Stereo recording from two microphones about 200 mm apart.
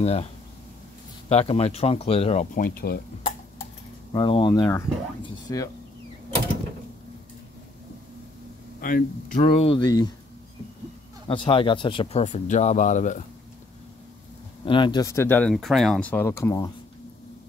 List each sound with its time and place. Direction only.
0.0 s speech: 30° left (ahead or behind)
1.3 s speech: 30° left (ahead or behind); by 3.3 s 50° left (ahead or behind)
4.1 s speech: 25° left (ahead or behind)
8.8 s speech: 45° left (ahead or behind)
9.4 s speech: 30° left (ahead or behind)
11.2 s speech: 25° left (ahead or behind)
14.6 s speech: 25° left (ahead or behind)